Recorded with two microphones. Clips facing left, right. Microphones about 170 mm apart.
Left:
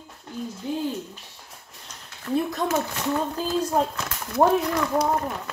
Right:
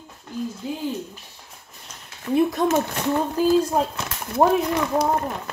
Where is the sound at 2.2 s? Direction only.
20° right (ahead or behind).